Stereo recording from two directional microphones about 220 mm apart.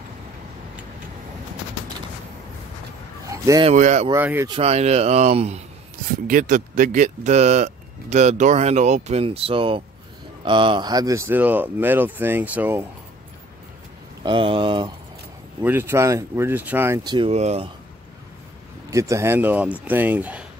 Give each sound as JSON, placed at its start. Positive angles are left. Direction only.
{"t": 3.3, "sound": "a sound", "side_deg": -15}
{"t": 3.6, "sound": "speech", "side_deg": -35}
{"t": 4.1, "sound": "speech", "side_deg": -10}
{"t": 4.5, "sound": "speech", "side_deg": -30}
{"t": 14.2, "sound": "speech", "side_deg": -25}
{"t": 15.6, "sound": "speech", "side_deg": -10}
{"t": 18.9, "sound": "speech", "side_deg": -15}